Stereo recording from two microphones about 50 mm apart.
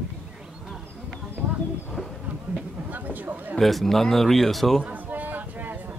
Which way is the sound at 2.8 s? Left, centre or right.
Right.